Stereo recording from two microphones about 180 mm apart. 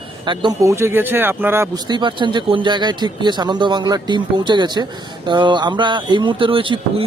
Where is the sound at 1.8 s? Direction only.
25° right (ahead or behind).